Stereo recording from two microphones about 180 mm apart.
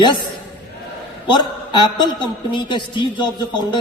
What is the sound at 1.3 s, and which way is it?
A woman's voice, 25° left (ahead or behind).